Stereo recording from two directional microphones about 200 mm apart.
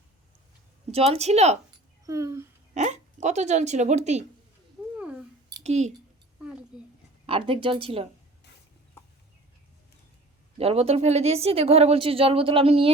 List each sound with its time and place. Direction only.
0.9 s speech: 30° right (ahead or behind)
2.0 s speech: 15° right (ahead or behind)
2.7 s speech: 35° right (ahead or behind)
4.9 s cat: 5° right (ahead or behind)
5.6 s speech: 35° right (ahead or behind)
6.4 s a sound: 5° right (ahead or behind)
7.3 s a woman's voice: 25° right (ahead or behind)
10.6 s a woman's voice: 30° right (ahead or behind)